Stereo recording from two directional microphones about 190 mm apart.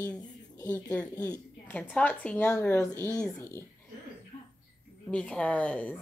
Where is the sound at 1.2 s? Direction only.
20° left (ahead or behind).